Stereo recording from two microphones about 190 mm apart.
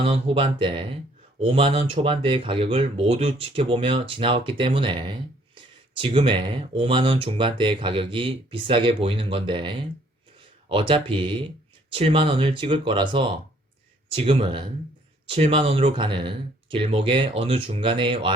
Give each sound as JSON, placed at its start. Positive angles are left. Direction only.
{"t": 0.0, "sound": "speech", "side_deg": -30}